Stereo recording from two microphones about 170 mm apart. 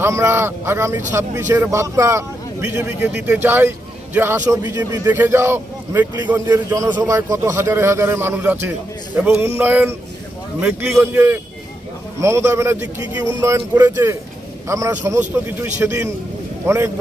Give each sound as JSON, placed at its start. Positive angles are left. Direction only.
{"t": 0.0, "sound": "a man's voice", "side_deg": -15}
{"t": 5.0, "sound": "a man's voice", "side_deg": -10}